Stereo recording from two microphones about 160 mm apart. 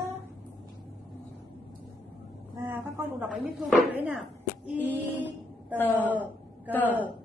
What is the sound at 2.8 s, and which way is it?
Speech, centre (ahead or behind).